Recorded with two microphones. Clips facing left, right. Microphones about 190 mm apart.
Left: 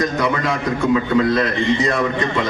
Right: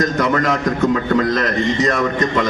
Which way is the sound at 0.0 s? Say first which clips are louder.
Right 2 dB; 45° right (ahead or behind).